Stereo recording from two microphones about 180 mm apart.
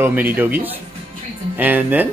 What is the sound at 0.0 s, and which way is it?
Speech, 10° right (ahead or behind).